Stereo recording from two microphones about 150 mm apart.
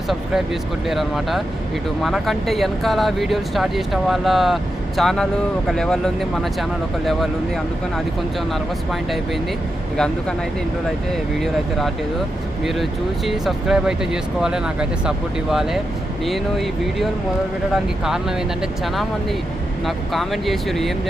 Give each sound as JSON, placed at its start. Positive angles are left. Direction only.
{"t": 0.9, "sound": "speech", "side_deg": 0}
{"t": 12.6, "sound": "speech", "side_deg": 0}
{"t": 19.8, "sound": "speech", "side_deg": 0}